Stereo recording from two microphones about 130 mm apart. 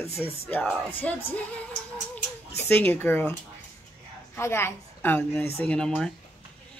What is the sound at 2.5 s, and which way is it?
Speech, 15° left (ahead or behind).